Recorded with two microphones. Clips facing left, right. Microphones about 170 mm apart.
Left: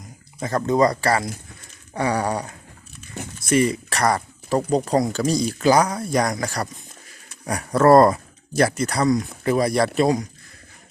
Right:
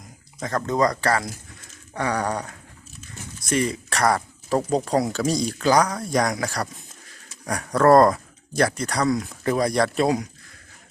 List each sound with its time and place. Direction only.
0.3 s speech: 10° left (ahead or behind)
3.2 s a sound: 65° left (ahead or behind)
3.5 s speech: 5° left (ahead or behind)